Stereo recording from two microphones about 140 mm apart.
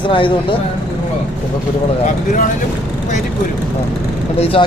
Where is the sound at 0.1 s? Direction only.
35° left (ahead or behind).